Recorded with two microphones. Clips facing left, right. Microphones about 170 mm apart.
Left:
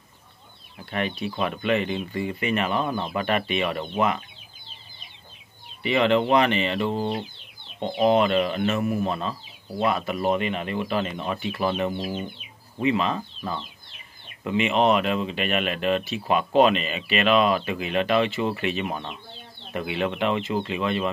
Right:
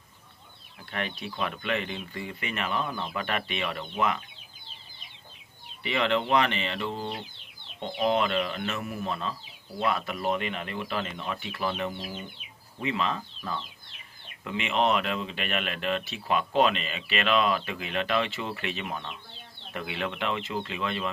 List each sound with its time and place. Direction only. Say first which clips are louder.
0.9 s speech: left 6 dB; 10° left (ahead or behind)
2.7 s speech: left 5 dB; 30° left (ahead or behind)
3.2 s speech: left 7 dB; 15° left (ahead or behind)
3.8 s speech: left 1 dB; 35° left (ahead or behind)
5.9 s speech: left 6 dB; 10° left (ahead or behind)
6.9 s speech: left 7 dB; 40° left (ahead or behind)
8.2 s speech: left 6 dB; 15° left (ahead or behind)
8.7 s speech: left 9 dB; 40° left (ahead or behind)
9.8 s speech: left 4 dB; 15° left (ahead or behind)
18.9 s speech: left 5 dB; 25° left (ahead or behind)
19.7 s speech: left 6 dB; 15° left (ahead or behind)